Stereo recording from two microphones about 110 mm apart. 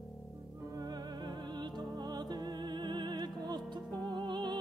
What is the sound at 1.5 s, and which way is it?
Music, 40° right (ahead or behind).